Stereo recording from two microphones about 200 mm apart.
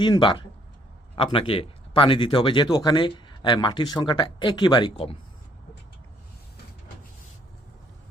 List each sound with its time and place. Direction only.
0.0 s speech: 25° left (ahead or behind)